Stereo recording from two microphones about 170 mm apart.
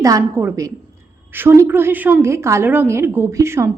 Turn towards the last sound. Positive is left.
turn(degrees=-15)  # may be behind; listen again after turning